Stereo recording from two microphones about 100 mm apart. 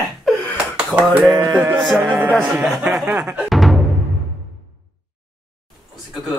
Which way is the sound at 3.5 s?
Centre (ahead or behind).